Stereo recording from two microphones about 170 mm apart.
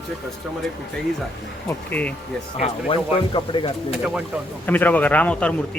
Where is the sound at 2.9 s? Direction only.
30° left (ahead or behind).